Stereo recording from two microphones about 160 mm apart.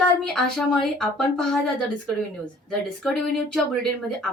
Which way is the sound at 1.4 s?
5° left (ahead or behind).